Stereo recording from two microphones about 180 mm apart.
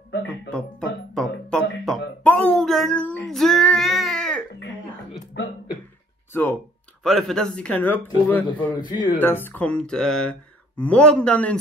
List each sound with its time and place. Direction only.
0.5 s music: 5° left (ahead or behind)
5.3 s cough: 70° left (ahead or behind)
7.0 s speech: centre (ahead or behind)
8.7 s speech: 25° left (ahead or behind)
9.2 s a man's voice: 10° left (ahead or behind)